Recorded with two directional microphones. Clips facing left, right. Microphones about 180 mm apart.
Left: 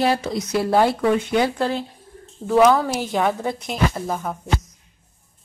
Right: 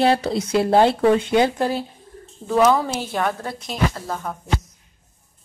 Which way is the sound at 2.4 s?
Centre (ahead or behind).